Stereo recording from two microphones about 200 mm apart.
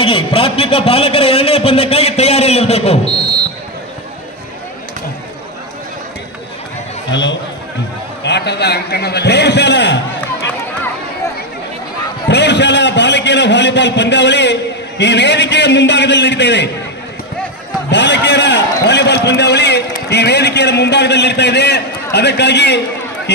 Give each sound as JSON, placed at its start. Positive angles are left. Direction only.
{"t": 0.0, "sound": "a man's voice", "side_deg": 25}
{"t": 7.1, "sound": "a man's voice", "side_deg": 65}
{"t": 12.3, "sound": "a man's voice", "side_deg": 60}
{"t": 17.9, "sound": "a man's voice", "side_deg": 60}